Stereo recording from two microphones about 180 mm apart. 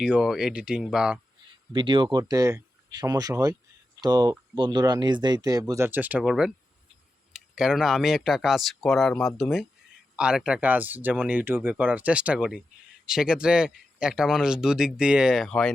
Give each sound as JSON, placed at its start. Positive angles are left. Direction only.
{"t": 0.0, "sound": "speech", "side_deg": -5}
{"t": 1.7, "sound": "speech", "side_deg": -25}
{"t": 7.5, "sound": "speech", "side_deg": -5}